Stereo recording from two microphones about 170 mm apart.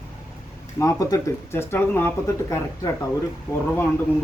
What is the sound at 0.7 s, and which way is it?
Speech, 20° left (ahead or behind).